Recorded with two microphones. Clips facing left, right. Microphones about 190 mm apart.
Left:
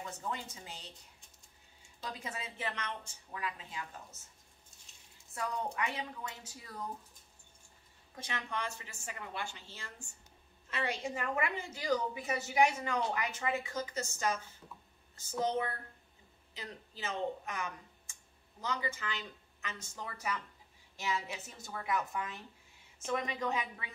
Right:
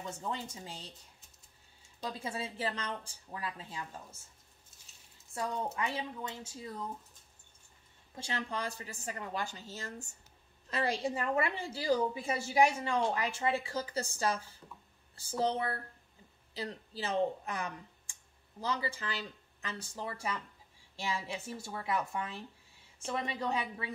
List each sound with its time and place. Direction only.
0.3 s a woman's voice: 30° right (ahead or behind)
2.0 s a woman's voice: 30° right (ahead or behind)
5.3 s a woman's voice: 30° right (ahead or behind)
8.2 s a woman's voice: 30° right (ahead or behind)